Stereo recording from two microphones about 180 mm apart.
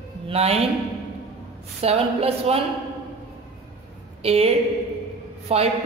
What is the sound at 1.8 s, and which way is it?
Speech, 35° right (ahead or behind).